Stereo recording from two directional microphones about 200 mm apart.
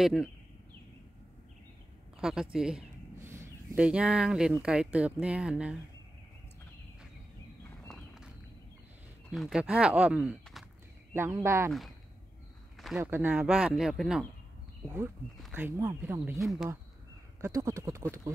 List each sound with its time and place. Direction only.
0.0 s speech: centre (ahead or behind)
2.1 s a sound: 5° right (ahead or behind)
2.5 s speech: 5° right (ahead or behind)
7.9 s walk: 5° right (ahead or behind)
9.3 s speech: centre (ahead or behind)
13.0 s speech: 10° right (ahead or behind)
15.4 s speech: 10° right (ahead or behind)
17.4 s speech: 15° right (ahead or behind)